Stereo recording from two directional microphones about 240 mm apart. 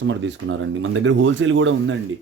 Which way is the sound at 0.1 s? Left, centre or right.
Right.